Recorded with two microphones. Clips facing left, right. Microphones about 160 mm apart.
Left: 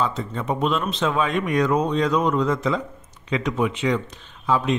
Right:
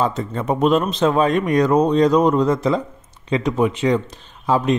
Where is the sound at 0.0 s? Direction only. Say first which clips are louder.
Right 4 dB; 45° right (ahead or behind).